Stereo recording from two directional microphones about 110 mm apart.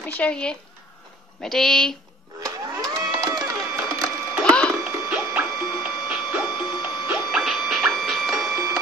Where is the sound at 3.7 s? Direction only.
25° right (ahead or behind).